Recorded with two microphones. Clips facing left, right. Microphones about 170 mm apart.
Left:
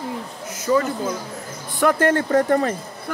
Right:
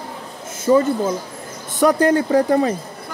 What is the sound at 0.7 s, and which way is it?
Speech, 25° right (ahead or behind).